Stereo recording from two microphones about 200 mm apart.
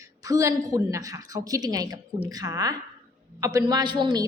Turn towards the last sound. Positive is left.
turn(degrees=-20)  # may be behind; listen again after turning